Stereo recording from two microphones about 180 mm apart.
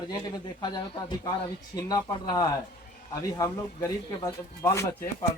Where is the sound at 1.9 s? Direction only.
20° left (ahead or behind).